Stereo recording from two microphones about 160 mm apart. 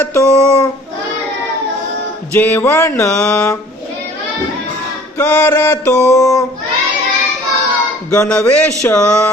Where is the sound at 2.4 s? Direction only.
15° left (ahead or behind).